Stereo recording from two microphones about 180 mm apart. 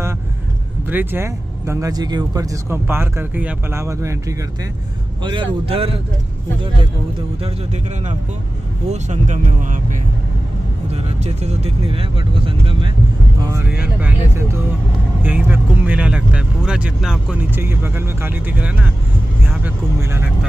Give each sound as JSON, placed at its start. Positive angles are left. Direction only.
{"t": 0.8, "sound": "speech", "side_deg": -10}
{"t": 7.4, "sound": "speech", "side_deg": -40}
{"t": 13.4, "sound": "speech", "side_deg": -20}
{"t": 13.7, "sound": "speech", "side_deg": -10}